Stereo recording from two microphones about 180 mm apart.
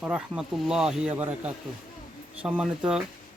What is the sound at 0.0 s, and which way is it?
Speech, 5° right (ahead or behind).